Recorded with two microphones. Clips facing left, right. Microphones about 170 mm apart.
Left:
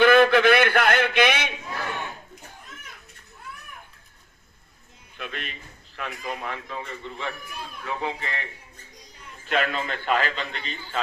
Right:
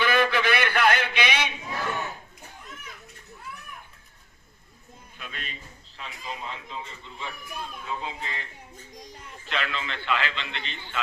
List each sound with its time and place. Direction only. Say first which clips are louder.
0.0 s a sound: left 8 dB; 55° left (ahead or behind)
5.1 s a man's voice: left 5 dB; 55° left (ahead or behind)
9.5 s a man's voice: left 6 dB; 50° left (ahead or behind)